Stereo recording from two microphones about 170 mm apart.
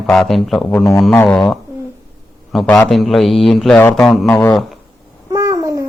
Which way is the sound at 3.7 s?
10° left (ahead or behind).